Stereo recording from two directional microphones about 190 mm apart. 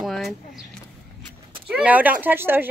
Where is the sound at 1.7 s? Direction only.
5° right (ahead or behind).